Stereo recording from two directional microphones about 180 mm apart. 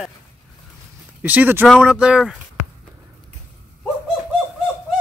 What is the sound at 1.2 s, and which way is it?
Speech, 10° right (ahead or behind).